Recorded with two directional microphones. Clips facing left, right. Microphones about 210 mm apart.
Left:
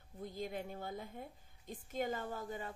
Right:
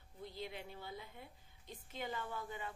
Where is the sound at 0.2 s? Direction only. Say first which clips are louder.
Left 5 dB; 45° left (ahead or behind).